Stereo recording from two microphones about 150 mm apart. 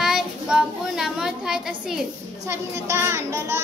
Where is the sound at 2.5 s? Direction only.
15° right (ahead or behind).